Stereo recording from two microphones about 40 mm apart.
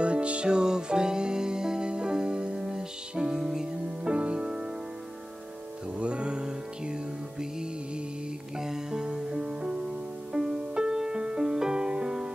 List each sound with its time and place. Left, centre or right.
0.0 s music: right
3.8 s music: right
5.9 s music: right